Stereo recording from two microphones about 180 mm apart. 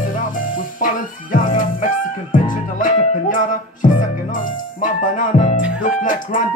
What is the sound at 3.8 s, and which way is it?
Speech, 50° left (ahead or behind).